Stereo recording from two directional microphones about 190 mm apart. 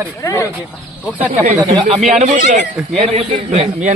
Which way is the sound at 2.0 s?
40° right (ahead or behind).